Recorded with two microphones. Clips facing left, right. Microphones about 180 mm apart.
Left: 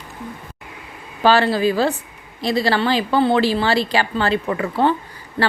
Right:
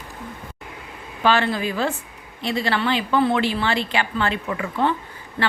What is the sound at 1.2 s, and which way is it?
A woman's voice, 35° left (ahead or behind).